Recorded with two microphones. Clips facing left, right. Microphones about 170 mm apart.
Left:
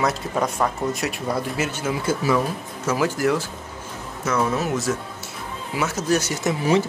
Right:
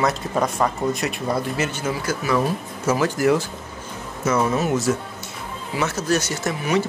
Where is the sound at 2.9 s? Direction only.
10° right (ahead or behind).